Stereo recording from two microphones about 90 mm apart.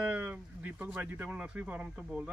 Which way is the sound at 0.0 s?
15° right (ahead or behind).